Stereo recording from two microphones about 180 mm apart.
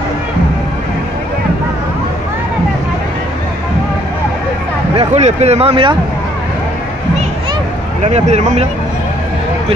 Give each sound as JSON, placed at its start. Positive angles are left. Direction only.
{"t": 4.9, "sound": "speech", "side_deg": -35}
{"t": 8.0, "sound": "speech", "side_deg": -40}